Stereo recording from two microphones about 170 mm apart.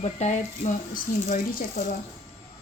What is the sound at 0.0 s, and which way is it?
Speech, 40° left (ahead or behind).